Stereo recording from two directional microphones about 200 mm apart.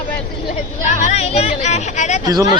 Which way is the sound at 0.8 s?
35° left (ahead or behind).